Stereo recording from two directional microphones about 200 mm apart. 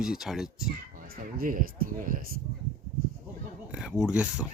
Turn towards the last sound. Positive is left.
turn(degrees=-5)  # may be behind; listen again after turning